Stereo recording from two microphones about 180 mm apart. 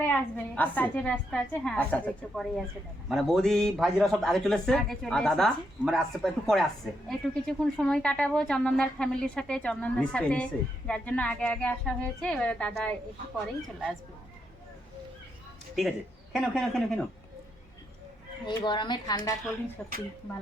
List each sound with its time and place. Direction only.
0.0 s a woman's voice: 10° left (ahead or behind)
16.3 s speech: centre (ahead or behind)
18.4 s a woman's voice: 25° left (ahead or behind)